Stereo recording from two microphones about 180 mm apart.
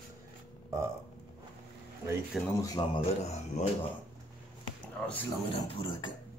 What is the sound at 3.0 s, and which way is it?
Speech, 35° left (ahead or behind).